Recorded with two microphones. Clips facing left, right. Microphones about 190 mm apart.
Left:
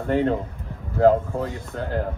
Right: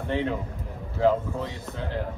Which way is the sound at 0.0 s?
45° left (ahead or behind).